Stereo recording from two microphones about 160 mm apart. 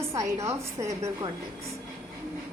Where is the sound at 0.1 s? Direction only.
20° right (ahead or behind).